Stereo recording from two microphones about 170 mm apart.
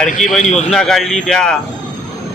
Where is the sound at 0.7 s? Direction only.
Centre (ahead or behind).